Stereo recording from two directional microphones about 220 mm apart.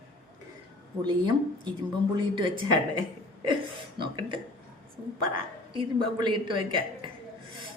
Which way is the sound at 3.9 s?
20° right (ahead or behind).